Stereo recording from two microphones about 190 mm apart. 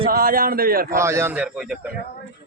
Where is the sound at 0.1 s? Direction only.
50° right (ahead or behind).